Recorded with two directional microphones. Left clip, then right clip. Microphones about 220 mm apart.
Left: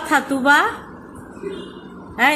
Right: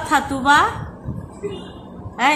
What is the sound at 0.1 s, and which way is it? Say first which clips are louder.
Speech: even; 15° left (ahead or behind).